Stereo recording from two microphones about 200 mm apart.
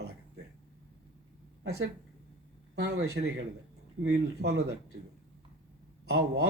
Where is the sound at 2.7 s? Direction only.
55° right (ahead or behind).